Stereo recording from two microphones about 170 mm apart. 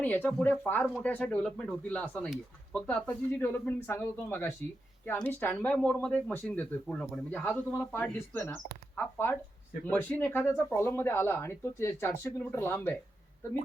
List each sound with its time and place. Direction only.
0.0 s speech: 10° left (ahead or behind)